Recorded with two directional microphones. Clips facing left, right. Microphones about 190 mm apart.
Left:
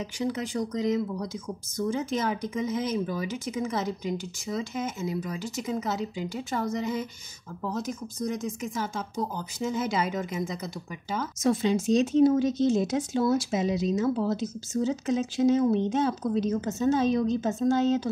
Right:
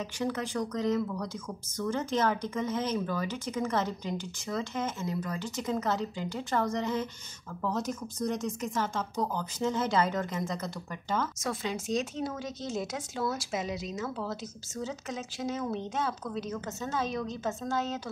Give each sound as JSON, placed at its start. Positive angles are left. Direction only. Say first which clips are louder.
{"t": 0.0, "sound": "speech", "louder": "left 2 dB", "side_deg": 15}
{"t": 8.3, "sound": "speech", "louder": "left 1 dB", "side_deg": 5}
{"t": 11.4, "sound": "speech", "louder": "left 9 dB", "side_deg": 20}